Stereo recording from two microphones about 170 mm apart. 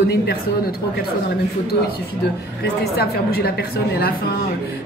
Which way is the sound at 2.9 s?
65° left (ahead or behind).